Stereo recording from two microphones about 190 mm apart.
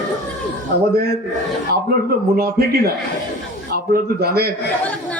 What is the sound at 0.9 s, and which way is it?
Speech, 55° right (ahead or behind).